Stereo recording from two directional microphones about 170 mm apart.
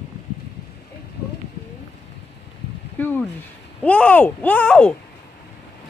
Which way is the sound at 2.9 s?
10° left (ahead or behind).